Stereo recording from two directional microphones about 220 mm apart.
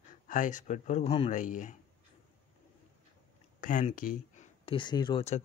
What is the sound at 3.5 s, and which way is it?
Speech, 35° left (ahead or behind).